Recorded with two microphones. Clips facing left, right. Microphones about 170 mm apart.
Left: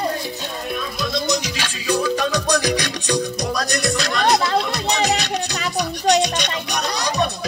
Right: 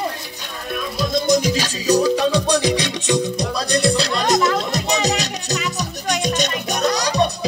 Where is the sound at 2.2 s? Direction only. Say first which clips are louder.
Right 3 dB; 30° right (ahead or behind); by 7.1 s 45° right (ahead or behind).